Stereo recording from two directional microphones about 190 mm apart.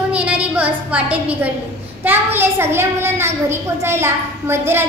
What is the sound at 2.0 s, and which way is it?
A woman's voice, 10° right (ahead or behind).